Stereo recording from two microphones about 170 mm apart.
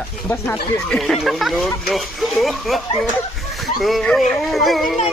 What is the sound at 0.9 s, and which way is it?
Speech, centre (ahead or behind).